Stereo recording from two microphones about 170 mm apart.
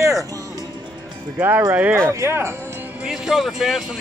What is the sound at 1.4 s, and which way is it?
Speech, 15° right (ahead or behind).